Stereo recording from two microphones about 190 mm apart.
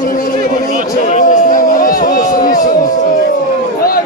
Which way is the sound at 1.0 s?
45° left (ahead or behind).